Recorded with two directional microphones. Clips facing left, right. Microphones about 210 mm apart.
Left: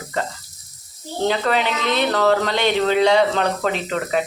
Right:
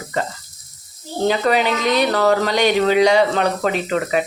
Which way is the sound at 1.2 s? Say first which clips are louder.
Right 3 dB; 10° right (ahead or behind).